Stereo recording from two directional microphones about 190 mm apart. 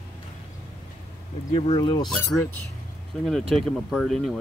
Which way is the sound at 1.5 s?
30° left (ahead or behind).